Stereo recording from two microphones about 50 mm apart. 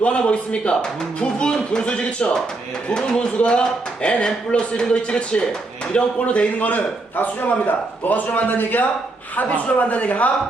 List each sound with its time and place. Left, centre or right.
0.0 s a man's voice: left